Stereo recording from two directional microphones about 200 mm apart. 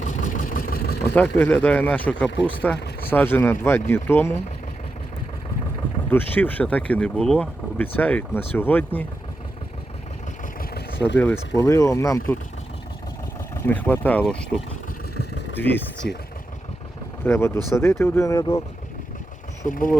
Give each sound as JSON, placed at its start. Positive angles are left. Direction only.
{"t": 0.0, "sound": "vehicle", "side_deg": 40}
{"t": 1.1, "sound": "speech", "side_deg": 10}
{"t": 2.7, "sound": "a sound", "side_deg": 55}
{"t": 3.1, "sound": "speech", "side_deg": 10}
{"t": 6.1, "sound": "speech", "side_deg": 10}
{"t": 10.6, "sound": "vehicle", "side_deg": 55}
{"t": 11.2, "sound": "speech", "side_deg": 10}
{"t": 13.7, "sound": "speech", "side_deg": 10}
{"t": 17.2, "sound": "speech", "side_deg": 15}
{"t": 19.6, "sound": "speech", "side_deg": 40}